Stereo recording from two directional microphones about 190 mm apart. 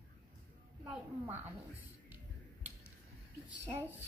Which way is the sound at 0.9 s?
10° right (ahead or behind).